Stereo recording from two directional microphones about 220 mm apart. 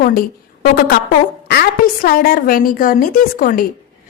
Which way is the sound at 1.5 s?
45° left (ahead or behind).